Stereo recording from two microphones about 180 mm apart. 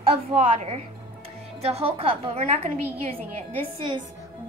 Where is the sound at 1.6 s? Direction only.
35° right (ahead or behind).